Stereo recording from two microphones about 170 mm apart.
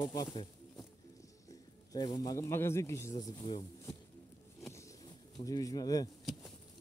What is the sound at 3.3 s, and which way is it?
Speech, 35° left (ahead or behind).